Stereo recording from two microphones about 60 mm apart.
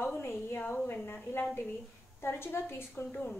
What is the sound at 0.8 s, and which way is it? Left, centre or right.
A woman's voice, left.